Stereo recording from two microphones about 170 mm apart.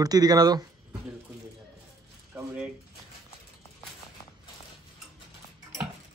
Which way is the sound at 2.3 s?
10° right (ahead or behind).